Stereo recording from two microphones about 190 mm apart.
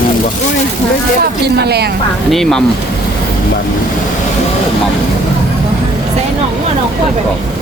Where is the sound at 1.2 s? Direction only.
60° right (ahead or behind).